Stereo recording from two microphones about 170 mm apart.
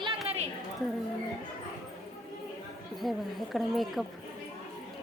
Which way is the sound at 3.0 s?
Centre (ahead or behind).